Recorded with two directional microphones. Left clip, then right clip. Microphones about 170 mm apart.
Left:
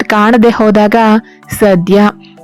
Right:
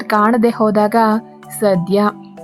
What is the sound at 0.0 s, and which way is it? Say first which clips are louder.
Speech: left 6 dB; 30° left (ahead or behind).